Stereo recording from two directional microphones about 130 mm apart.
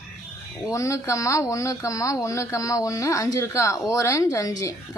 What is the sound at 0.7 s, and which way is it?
Speech, 25° left (ahead or behind).